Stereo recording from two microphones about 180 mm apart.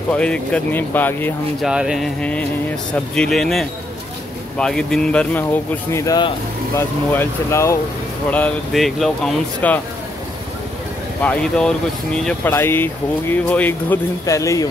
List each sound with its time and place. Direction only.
0.1 s speech: 5° left (ahead or behind)
1.7 s speech: 5° right (ahead or behind); by 7.8 s 15° left (ahead or behind)
8.3 s speech: 5° left (ahead or behind)
11.2 s speech: 5° left (ahead or behind)